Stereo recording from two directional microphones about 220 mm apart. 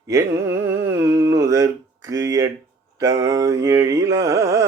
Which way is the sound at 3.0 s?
15° right (ahead or behind).